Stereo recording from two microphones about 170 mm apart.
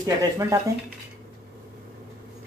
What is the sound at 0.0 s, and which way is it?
Speech, 15° right (ahead or behind).